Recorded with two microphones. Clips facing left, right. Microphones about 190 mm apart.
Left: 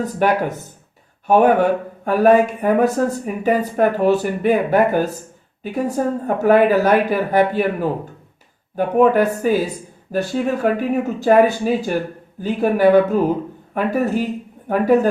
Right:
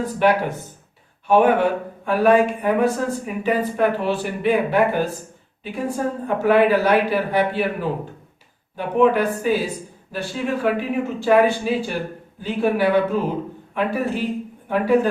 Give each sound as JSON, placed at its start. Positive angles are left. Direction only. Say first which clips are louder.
{"t": 0.0, "sound": "speech", "louder": "left 1 dB", "side_deg": 45}